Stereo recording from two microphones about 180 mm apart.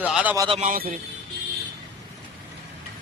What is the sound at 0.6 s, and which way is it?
Speech, 45° right (ahead or behind).